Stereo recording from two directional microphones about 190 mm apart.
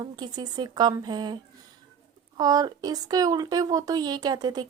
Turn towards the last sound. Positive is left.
turn(degrees=-20)  # may be behind; listen again after turning